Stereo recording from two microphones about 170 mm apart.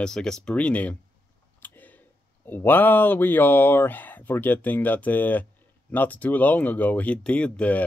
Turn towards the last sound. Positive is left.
turn(degrees=10)  # may be behind; listen again after turning